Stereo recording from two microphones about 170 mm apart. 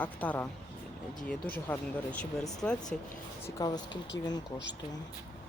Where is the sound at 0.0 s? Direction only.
10° left (ahead or behind).